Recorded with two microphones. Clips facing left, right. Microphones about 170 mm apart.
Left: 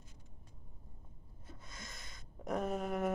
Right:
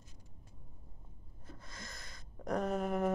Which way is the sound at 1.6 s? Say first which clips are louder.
Right 1 dB; 20° left (ahead or behind).